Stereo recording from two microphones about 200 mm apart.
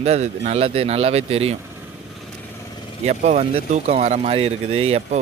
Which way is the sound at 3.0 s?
35° right (ahead or behind).